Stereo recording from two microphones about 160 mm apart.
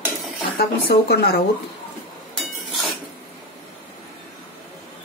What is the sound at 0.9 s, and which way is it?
Speech, 75° left (ahead or behind).